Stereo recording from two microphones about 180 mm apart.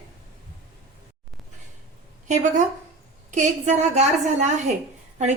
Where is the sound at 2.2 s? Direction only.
40° right (ahead or behind).